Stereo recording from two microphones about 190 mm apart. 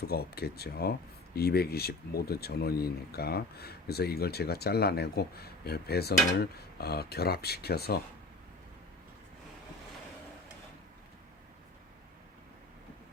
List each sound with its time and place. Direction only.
0.1 s speech: 55° left (ahead or behind)